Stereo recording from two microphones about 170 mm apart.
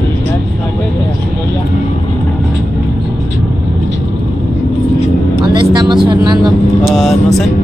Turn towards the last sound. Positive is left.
turn(degrees=0)  # may be behind; listen again after turning